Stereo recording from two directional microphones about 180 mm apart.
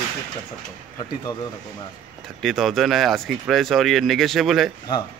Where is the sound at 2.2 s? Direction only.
Centre (ahead or behind).